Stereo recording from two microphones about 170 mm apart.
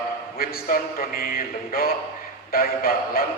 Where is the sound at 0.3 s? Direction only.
60° left (ahead or behind).